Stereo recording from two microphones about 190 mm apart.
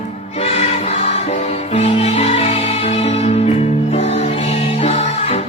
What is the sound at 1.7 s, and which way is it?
Music, 35° left (ahead or behind).